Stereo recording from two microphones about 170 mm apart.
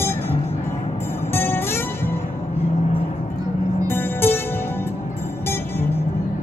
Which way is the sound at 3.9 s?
15° left (ahead or behind).